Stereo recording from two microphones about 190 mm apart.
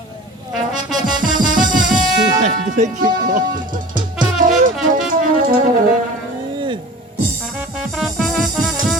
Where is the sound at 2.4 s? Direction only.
40° right (ahead or behind).